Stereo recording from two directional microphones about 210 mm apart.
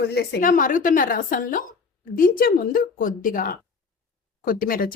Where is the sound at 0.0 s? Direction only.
50° left (ahead or behind).